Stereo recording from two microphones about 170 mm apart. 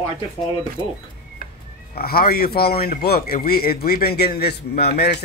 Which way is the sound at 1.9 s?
65° left (ahead or behind).